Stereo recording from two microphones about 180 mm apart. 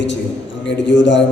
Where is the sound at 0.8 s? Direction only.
85° left.